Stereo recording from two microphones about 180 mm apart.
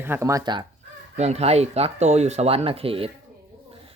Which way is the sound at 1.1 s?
35° right (ahead or behind).